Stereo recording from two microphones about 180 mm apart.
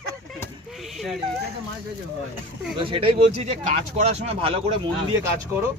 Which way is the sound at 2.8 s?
30° right (ahead or behind).